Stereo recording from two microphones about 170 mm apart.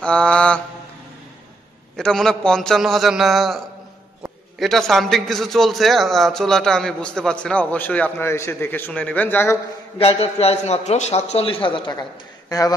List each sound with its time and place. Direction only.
0.0 s mantra: 5° left (ahead or behind)
2.0 s a man's voice: 5° left (ahead or behind)
9.9 s a man's voice: 35° left (ahead or behind)